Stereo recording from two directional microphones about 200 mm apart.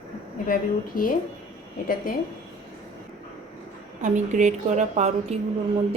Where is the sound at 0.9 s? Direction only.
45° left (ahead or behind).